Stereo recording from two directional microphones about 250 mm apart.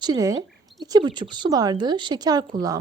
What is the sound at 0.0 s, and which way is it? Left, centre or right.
A woman's voice, centre.